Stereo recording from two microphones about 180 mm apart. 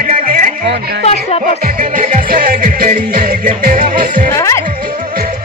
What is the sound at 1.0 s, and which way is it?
Music, 35° left (ahead or behind).